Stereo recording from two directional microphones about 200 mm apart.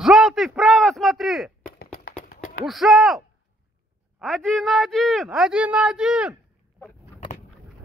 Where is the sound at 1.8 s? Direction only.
45° left (ahead or behind).